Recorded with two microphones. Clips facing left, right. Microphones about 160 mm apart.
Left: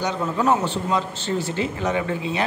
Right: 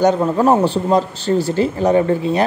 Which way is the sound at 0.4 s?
35° right (ahead or behind).